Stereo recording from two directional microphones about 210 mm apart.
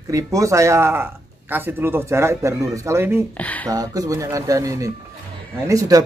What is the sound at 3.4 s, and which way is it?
Speech, 5° left (ahead or behind).